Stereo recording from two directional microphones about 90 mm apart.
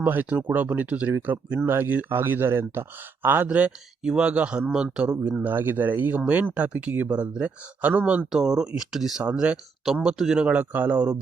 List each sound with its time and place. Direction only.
0.0 s speech: 20° right (ahead or behind)
5.4 s speech: 20° right (ahead or behind)